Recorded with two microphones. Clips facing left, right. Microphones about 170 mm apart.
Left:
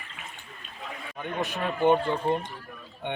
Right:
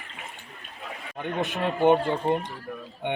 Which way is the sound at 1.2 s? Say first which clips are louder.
Right 3 dB; 20° right (ahead or behind).